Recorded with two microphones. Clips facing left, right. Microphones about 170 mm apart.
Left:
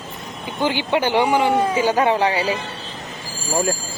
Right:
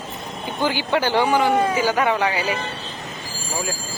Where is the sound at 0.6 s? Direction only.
20° left (ahead or behind).